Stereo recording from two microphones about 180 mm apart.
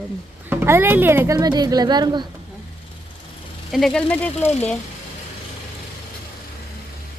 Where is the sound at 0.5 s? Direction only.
15° right (ahead or behind).